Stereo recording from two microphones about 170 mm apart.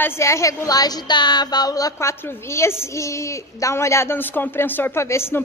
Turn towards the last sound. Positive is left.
turn(degrees=15)  # may be behind; listen again after turning